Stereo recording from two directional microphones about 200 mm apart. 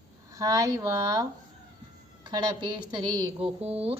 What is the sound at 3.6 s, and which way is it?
Speech, 30° right (ahead or behind).